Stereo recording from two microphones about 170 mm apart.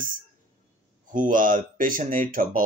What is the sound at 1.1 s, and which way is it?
A man's voice, 50° right (ahead or behind).